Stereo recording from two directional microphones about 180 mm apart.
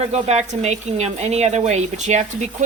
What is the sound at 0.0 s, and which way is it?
A woman's voice, 40° right (ahead or behind).